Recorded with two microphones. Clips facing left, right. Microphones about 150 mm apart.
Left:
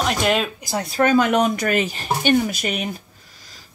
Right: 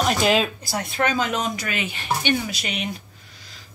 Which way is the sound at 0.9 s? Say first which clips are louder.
Left 6 dB; 40° left (ahead or behind).